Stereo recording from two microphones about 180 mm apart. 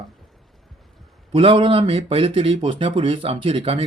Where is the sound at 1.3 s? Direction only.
30° right (ahead or behind).